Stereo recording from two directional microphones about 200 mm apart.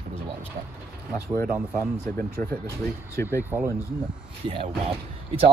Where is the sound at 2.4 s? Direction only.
15° left (ahead or behind).